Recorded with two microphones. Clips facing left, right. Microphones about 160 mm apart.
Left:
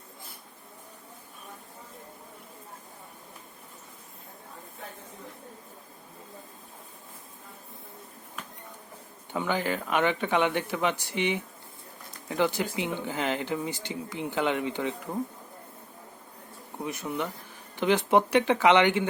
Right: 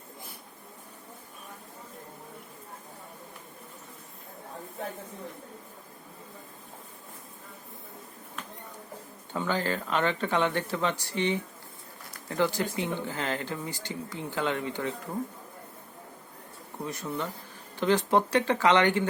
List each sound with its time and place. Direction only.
9.3 s speech: 15° left (ahead or behind)
16.8 s speech: 15° left (ahead or behind)